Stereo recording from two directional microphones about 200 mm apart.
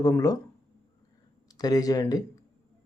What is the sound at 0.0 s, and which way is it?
Speech, 15° left (ahead or behind).